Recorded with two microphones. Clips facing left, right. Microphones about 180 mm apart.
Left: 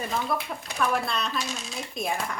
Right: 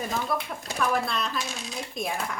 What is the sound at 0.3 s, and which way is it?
Speech, centre (ahead or behind).